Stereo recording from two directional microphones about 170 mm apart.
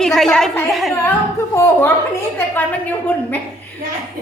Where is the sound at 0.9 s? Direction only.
10° left (ahead or behind).